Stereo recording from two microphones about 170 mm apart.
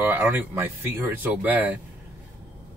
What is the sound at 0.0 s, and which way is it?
Speech, 10° right (ahead or behind).